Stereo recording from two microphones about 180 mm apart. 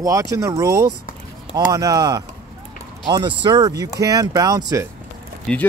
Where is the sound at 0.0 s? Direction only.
20° right (ahead or behind).